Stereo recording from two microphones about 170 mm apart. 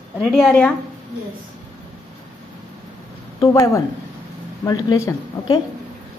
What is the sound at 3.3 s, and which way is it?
A woman's voice, 20° left (ahead or behind).